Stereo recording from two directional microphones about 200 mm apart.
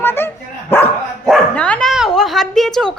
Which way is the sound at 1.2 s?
5° left (ahead or behind).